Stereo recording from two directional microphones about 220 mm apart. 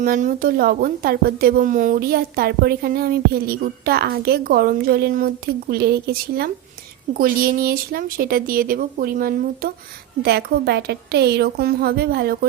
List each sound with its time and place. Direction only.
0.0 s a woman's voice: 35° right (ahead or behind)